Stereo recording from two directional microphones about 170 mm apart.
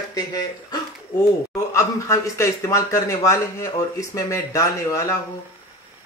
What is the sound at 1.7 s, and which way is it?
A man's voice, 20° left (ahead or behind).